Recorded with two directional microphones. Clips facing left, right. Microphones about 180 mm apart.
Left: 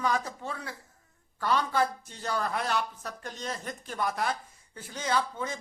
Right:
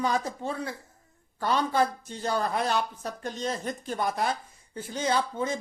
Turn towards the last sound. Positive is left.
turn(degrees=-25)  # may be behind; listen again after turning